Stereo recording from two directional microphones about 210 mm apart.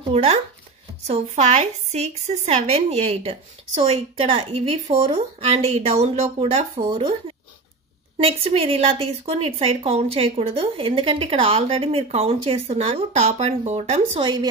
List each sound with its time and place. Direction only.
0.1 s a woman's voice: 30° right (ahead or behind)